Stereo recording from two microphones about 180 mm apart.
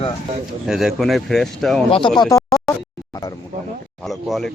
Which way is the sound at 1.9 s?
25° left (ahead or behind).